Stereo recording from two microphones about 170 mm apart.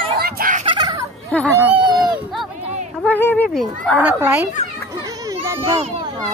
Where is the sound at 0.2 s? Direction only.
60° right (ahead or behind).